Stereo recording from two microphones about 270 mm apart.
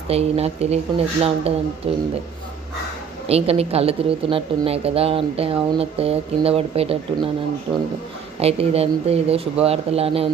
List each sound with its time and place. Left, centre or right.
0.1 s a woman's voice: right
3.2 s a woman's voice: right
8.4 s a woman's voice: right